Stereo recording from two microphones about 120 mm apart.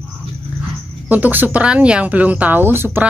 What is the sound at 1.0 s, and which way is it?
Speech, 15° right (ahead or behind).